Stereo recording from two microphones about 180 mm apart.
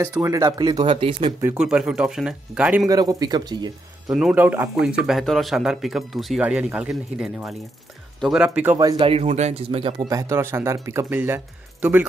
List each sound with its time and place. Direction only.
0.0 s speech: 20° right (ahead or behind)
1.6 s speech: 5° right (ahead or behind)
2.9 s speech: 20° right (ahead or behind)
4.1 s speech: 5° right (ahead or behind)
8.7 s speech: 25° right (ahead or behind); by 12.1 s 10° right (ahead or behind)